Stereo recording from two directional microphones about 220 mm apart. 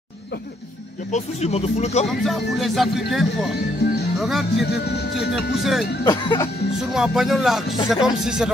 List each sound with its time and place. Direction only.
1.1 s speech: 30° left (ahead or behind)
2.0 s speech: centre (ahead or behind)
4.9 s speech: 50° left (ahead or behind)
5.3 s speech: centre (ahead or behind)
6.0 s speech: 20° left (ahead or behind)
6.9 s speech: centre (ahead or behind)